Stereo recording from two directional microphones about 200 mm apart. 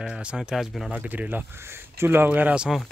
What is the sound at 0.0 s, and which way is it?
Speech, 5° right (ahead or behind).